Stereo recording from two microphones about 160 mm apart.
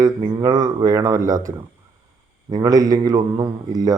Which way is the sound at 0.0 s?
25° right (ahead or behind).